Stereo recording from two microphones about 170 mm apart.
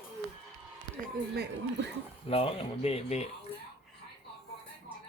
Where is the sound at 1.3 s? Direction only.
75° right (ahead or behind).